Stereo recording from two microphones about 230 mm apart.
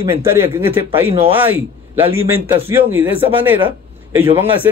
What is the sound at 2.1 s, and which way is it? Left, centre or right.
Speech, right.